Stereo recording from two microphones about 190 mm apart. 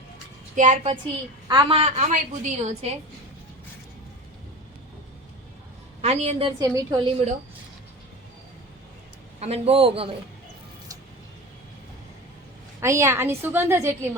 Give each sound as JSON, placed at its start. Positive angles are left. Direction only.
{"t": 0.5, "sound": "a woman's voice", "side_deg": -40}
{"t": 1.5, "sound": "a woman's voice", "side_deg": -25}
{"t": 2.0, "sound": "a woman's voice", "side_deg": -40}
{"t": 6.0, "sound": "a woman's voice", "side_deg": -35}
{"t": 6.6, "sound": "a woman's voice", "side_deg": -20}
{"t": 9.4, "sound": "a woman's voice", "side_deg": -30}
{"t": 12.8, "sound": "a woman's voice", "side_deg": -15}